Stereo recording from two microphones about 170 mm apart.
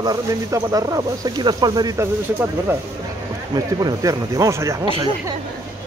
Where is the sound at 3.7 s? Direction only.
20° right (ahead or behind).